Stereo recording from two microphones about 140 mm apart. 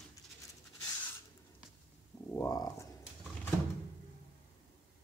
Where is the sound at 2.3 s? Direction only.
25° left (ahead or behind).